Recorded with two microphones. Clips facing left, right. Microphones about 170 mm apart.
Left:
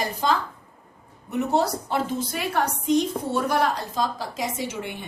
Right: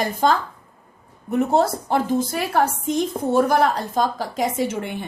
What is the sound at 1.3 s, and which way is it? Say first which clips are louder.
A woman's voice: right 4 dB; 50° right (ahead or behind).